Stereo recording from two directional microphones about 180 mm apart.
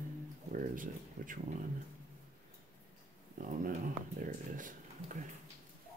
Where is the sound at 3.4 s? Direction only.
45° right (ahead or behind).